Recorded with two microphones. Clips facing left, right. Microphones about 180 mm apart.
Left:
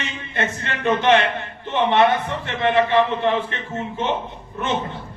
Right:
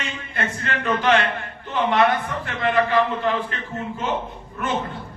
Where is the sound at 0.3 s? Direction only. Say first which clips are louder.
Left 1 dB; 25° left (ahead or behind).